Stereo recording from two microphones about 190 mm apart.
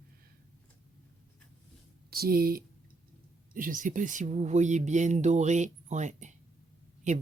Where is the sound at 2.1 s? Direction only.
50° right (ahead or behind).